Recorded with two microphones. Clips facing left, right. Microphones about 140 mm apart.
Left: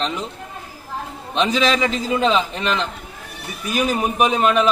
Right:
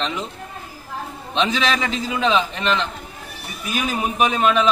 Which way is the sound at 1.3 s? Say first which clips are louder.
Left 2 dB; 5° left (ahead or behind).